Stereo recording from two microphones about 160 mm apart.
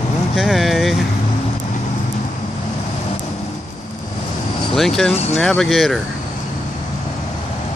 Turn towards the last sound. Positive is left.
turn(degrees=0)  # may be behind; listen again after turning